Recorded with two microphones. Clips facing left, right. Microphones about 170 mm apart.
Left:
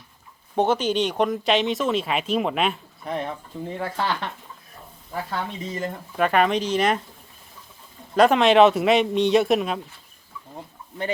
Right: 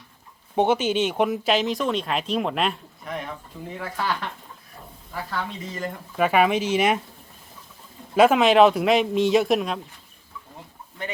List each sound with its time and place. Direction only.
0.5 s speech: 10° right (ahead or behind)
3.0 s speech: 30° left (ahead or behind)
5.3 s speech: 20° left (ahead or behind)
6.1 s speech: 5° right (ahead or behind)
8.1 s speech: 5° right (ahead or behind)